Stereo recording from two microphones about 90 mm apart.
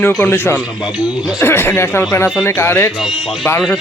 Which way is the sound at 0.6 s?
5° right (ahead or behind).